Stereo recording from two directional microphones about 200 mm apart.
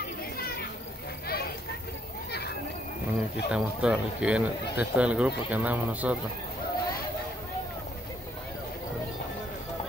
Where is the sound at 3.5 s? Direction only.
5° right (ahead or behind).